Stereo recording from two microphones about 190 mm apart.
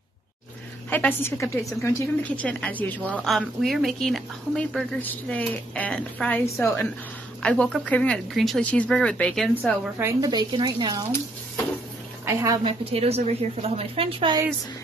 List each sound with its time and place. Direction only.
0.8 s speech: 10° left (ahead or behind)
9.9 s speech: 15° right (ahead or behind)
12.3 s a woman's voice: 15° right (ahead or behind)
12.6 s a woman's voice: 30° right (ahead or behind)